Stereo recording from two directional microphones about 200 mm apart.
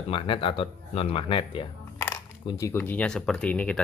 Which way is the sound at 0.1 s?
25° left (ahead or behind).